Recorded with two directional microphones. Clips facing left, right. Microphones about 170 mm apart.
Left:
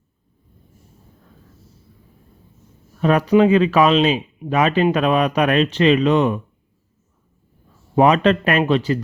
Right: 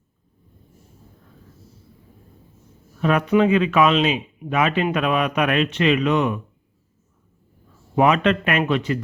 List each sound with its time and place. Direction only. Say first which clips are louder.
3.0 s speech: left 3 dB; 35° left (ahead or behind)
7.9 s speech: left 3 dB; 35° left (ahead or behind)